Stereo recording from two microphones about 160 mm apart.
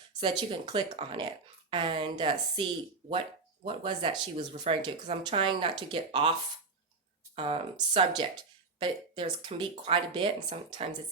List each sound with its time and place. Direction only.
0.2 s speech: 30° right (ahead or behind)
7.3 s speech: 35° right (ahead or behind)